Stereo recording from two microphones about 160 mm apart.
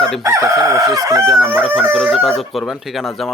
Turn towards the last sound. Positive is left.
turn(degrees=0)  # may be behind; listen again after turning